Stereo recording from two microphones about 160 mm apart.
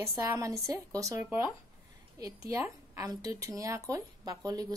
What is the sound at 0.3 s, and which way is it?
Speech, 20° right (ahead or behind).